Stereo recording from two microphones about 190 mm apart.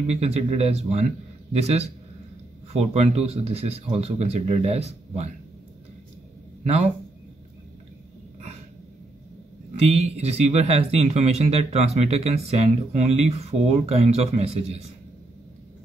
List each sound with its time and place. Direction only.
0.0 s a man's voice: 35° right (ahead or behind)
6.6 s a man's voice: 35° right (ahead or behind)
9.8 s a man's voice: 35° right (ahead or behind)